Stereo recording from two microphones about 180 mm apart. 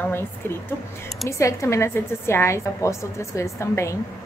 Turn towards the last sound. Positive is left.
turn(degrees=15)  # may be behind; listen again after turning